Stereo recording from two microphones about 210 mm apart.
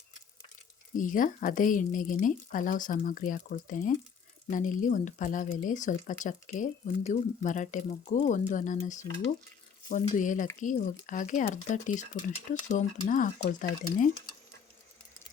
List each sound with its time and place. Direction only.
0.9 s speech: 40° left (ahead or behind)